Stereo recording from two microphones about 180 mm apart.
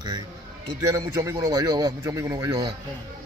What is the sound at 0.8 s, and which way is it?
A man's voice, 20° right (ahead or behind).